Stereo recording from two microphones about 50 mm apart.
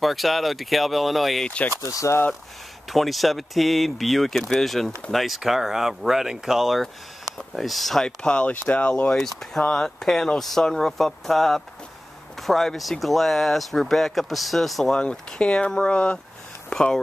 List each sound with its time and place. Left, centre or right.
0.0 s speech: centre
2.9 s speech: centre
8.3 s speech: left
9.1 s speech: centre
15.0 s speech: left
16.7 s speech: centre